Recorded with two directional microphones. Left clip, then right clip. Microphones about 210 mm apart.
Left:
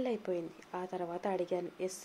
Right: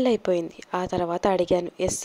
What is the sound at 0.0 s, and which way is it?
Speech, 40° right (ahead or behind).